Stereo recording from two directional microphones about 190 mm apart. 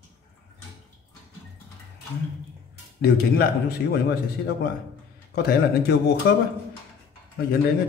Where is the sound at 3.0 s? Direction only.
55° left (ahead or behind).